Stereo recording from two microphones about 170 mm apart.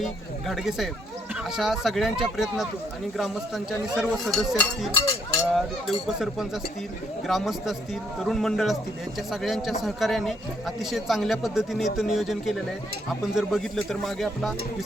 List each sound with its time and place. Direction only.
0.0 s speech: centre (ahead or behind)